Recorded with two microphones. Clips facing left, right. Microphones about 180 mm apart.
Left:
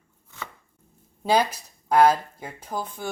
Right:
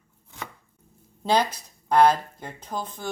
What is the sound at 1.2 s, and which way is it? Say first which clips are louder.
Speech: left 1 dB; 10° left (ahead or behind).